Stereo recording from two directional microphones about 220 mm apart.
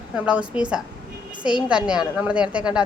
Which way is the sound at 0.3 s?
5° right (ahead or behind).